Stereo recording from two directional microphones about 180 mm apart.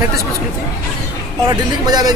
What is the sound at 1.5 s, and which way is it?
Speech, 20° right (ahead or behind).